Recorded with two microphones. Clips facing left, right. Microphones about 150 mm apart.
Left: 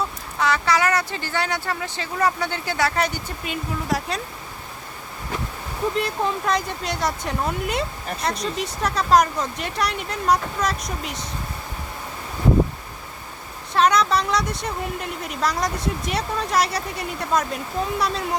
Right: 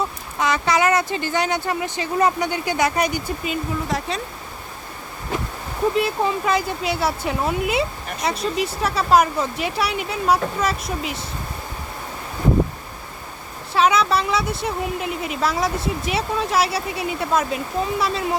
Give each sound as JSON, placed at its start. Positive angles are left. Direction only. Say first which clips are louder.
{"t": 0.3, "sound": "speech", "louder": "right 1 dB", "side_deg": -20}
{"t": 3.4, "sound": "speech", "louder": "right 3 dB", "side_deg": 0}
{"t": 6.0, "sound": "speech", "louder": "right 3 dB", "side_deg": -5}
{"t": 13.7, "sound": "speech", "louder": "right 1 dB", "side_deg": -5}